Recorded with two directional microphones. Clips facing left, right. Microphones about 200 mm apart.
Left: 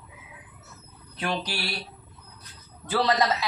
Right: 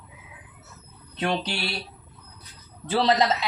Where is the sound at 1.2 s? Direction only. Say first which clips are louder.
Right 3 dB; 25° right (ahead or behind).